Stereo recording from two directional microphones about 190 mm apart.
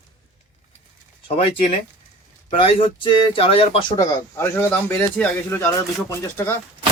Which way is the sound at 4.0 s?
15° left (ahead or behind).